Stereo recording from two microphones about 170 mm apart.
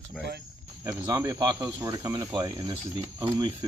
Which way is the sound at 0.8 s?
20° right (ahead or behind).